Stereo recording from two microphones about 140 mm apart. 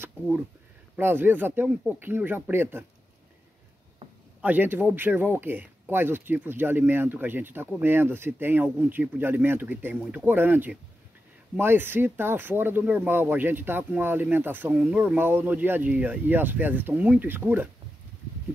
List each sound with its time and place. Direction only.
0.9 s speech: 15° right (ahead or behind)
4.0 s a sound: 40° right (ahead or behind)
4.4 s speech: 15° right (ahead or behind)